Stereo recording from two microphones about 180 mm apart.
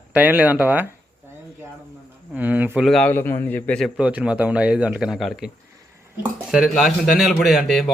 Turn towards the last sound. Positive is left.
turn(degrees=0)  # may be behind; listen again after turning